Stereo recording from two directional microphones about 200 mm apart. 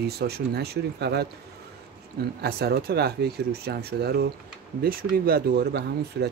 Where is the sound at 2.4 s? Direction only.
55° right (ahead or behind).